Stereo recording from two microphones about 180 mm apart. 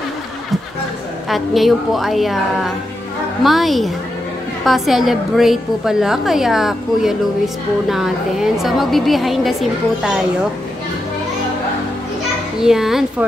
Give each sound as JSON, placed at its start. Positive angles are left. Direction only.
{"t": 1.3, "sound": "a woman's voice", "side_deg": 0}
{"t": 12.5, "sound": "a woman's voice", "side_deg": -5}